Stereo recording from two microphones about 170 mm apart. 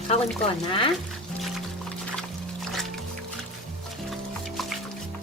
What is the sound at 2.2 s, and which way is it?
Music, centre (ahead or behind).